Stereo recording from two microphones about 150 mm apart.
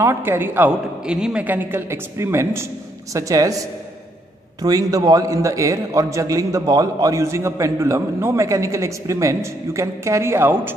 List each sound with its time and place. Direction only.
0.0 s a man's voice: 15° right (ahead or behind)